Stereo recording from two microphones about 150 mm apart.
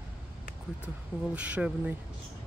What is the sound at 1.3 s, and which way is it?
Speech, 10° right (ahead or behind).